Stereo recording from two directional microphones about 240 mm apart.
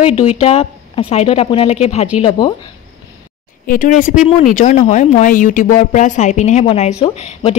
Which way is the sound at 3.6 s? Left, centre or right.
Left.